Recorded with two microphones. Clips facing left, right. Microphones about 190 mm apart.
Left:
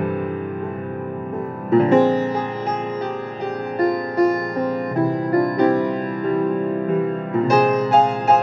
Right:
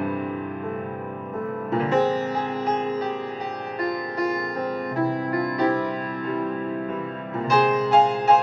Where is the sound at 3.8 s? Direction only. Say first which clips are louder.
Left 9 dB; 50° left (ahead or behind).